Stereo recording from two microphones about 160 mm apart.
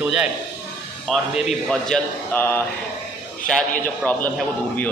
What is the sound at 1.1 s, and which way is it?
A man's voice, centre (ahead or behind).